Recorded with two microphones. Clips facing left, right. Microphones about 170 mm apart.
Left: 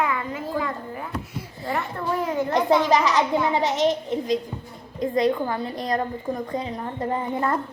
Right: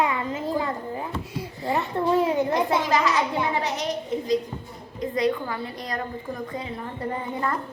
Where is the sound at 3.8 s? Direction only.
20° left (ahead or behind).